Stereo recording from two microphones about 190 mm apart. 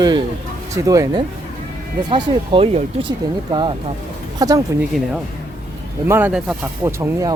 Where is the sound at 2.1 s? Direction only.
30° right (ahead or behind).